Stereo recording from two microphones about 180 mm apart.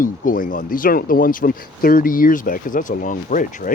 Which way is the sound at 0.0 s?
50° left (ahead or behind).